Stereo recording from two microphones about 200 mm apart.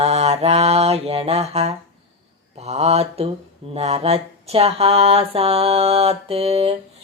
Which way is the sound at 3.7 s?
30° right (ahead or behind).